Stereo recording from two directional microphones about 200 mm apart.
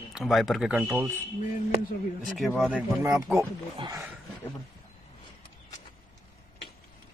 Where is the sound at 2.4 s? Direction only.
Centre (ahead or behind).